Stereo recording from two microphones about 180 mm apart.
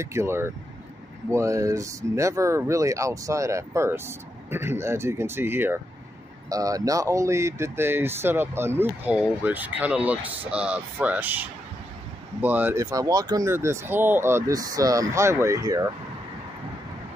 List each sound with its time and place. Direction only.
0.0 s speech: 15° right (ahead or behind)